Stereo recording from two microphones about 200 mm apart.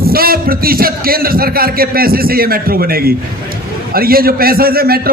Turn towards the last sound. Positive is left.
turn(degrees=-50)  # may be behind; listen again after turning